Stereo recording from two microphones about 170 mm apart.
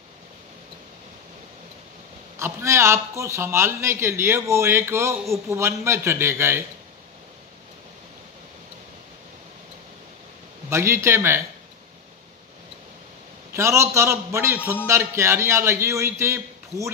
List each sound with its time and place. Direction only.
2.3 s a man's voice: 15° right (ahead or behind)
10.7 s a man's voice: 15° right (ahead or behind)
13.5 s a man's voice: 15° right (ahead or behind)